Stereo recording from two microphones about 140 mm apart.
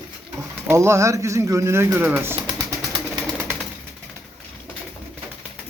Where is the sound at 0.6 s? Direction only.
20° right (ahead or behind).